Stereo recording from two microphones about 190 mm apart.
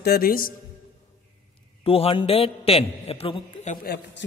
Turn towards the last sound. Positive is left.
turn(degrees=60)  # may be behind; listen again after turning